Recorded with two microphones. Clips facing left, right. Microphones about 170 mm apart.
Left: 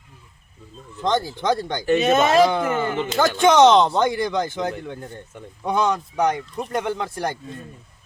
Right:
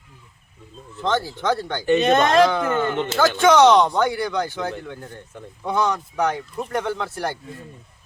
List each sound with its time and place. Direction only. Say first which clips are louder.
1.0 s speech: left 1 dB; 15° left (ahead or behind)
1.9 s speech: even; 5° left (ahead or behind)
3.3 s speech: even; 20° left (ahead or behind)